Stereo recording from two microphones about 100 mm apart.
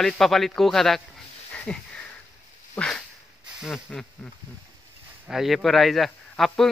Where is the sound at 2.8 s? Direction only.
5° left (ahead or behind).